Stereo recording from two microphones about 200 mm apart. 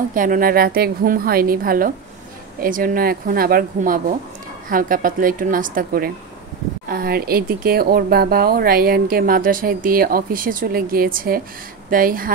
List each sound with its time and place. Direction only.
0.1 s speech: 45° right (ahead or behind)